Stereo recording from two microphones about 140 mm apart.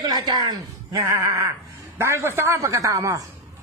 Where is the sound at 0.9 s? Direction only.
20° right (ahead or behind).